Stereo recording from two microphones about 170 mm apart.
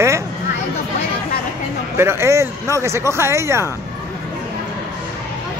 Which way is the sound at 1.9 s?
15° right (ahead or behind).